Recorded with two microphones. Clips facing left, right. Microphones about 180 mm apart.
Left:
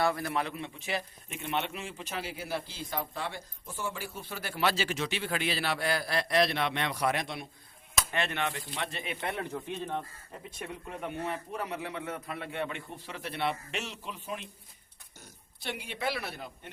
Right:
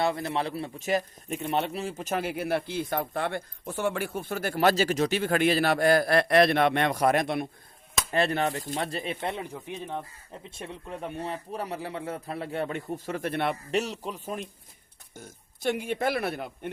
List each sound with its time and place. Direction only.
0.0 s a man's voice: 25° right (ahead or behind); by 7.4 s 50° right (ahead or behind)
8.1 s speech: 35° right (ahead or behind)
9.4 s speech: 10° right (ahead or behind)
10.5 s speech: 30° right (ahead or behind); by 16.5 s 55° right (ahead or behind)